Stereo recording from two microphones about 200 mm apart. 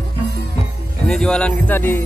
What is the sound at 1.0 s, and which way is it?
Speech, 5° left (ahead or behind).